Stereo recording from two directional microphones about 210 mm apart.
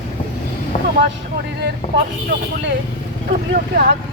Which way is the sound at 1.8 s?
30° left (ahead or behind).